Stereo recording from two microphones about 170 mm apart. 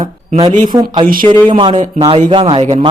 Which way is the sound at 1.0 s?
55° right (ahead or behind).